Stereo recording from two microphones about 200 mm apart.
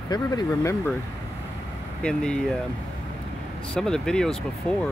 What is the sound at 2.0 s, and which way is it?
Speech, 5° left (ahead or behind).